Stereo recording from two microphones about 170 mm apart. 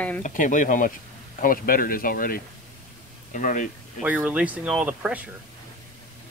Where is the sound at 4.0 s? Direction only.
10° right (ahead or behind).